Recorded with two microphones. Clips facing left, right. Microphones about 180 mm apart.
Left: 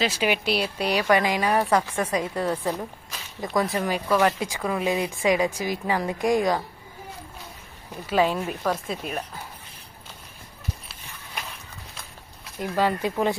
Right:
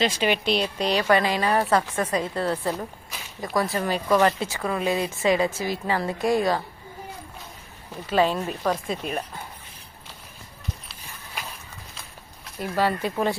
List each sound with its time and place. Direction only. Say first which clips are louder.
0.0 s speech: right 1 dB; 10° left (ahead or behind)
3.1 s a sound: left 1 dB; centre (ahead or behind)
3.6 s speech: even; 15° left (ahead or behind)
8.1 s speech: even; 10° left (ahead or behind)
12.5 s speech: even; 15° left (ahead or behind)